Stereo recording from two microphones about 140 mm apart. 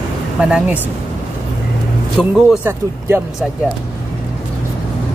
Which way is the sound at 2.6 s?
15° right (ahead or behind).